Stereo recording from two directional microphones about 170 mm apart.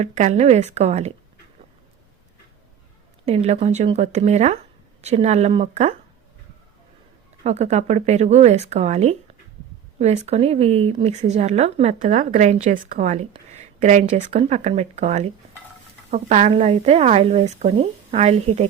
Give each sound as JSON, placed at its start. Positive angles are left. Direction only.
{"t": 0.0, "sound": "speech", "side_deg": -45}
{"t": 3.2, "sound": "speech", "side_deg": -40}
{"t": 7.4, "sound": "speech", "side_deg": -40}